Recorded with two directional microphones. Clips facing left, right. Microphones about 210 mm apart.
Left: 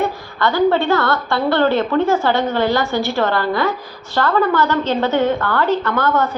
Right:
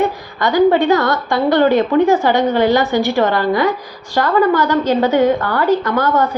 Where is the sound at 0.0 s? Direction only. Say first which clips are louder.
Right 2 dB; 15° right (ahead or behind).